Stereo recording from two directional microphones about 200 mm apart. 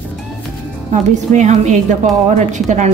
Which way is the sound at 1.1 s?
35° right (ahead or behind).